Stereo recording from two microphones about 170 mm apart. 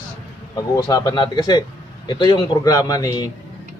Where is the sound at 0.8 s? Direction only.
20° left (ahead or behind).